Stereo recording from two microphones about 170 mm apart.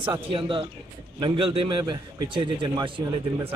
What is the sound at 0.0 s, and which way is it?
A man's voice, 30° right (ahead or behind).